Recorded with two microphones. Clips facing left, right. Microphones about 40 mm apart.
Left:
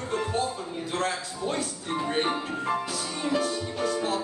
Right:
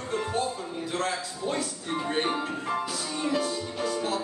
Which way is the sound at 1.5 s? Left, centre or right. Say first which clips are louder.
Even; centre.